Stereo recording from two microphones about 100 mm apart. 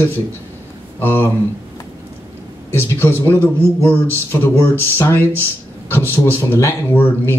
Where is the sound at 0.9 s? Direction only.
20° left (ahead or behind).